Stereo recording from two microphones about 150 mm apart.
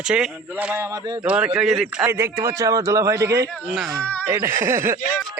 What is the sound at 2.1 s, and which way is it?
A man's voice, 20° right (ahead or behind).